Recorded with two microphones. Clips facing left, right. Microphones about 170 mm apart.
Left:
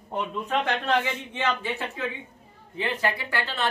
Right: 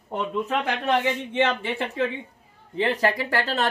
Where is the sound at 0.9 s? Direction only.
25° right (ahead or behind).